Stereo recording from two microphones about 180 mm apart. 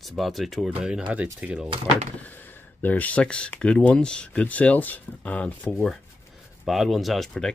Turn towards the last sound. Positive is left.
turn(degrees=5)  # may be behind; listen again after turning